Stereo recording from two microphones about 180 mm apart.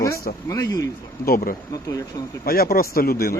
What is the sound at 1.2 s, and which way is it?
Speech, 55° left (ahead or behind).